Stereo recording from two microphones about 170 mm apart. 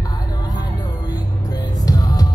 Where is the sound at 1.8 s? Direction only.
20° left (ahead or behind).